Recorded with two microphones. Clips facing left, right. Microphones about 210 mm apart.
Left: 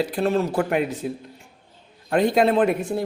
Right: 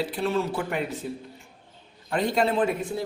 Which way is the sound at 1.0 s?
70° left (ahead or behind).